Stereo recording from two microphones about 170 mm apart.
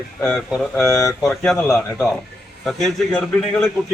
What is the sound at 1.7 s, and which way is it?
Speech, 10° left (ahead or behind).